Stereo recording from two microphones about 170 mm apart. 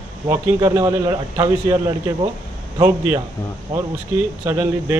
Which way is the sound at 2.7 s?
25° right (ahead or behind).